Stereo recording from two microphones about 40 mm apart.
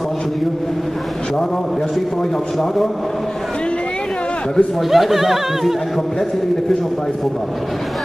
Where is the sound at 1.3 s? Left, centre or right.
Centre.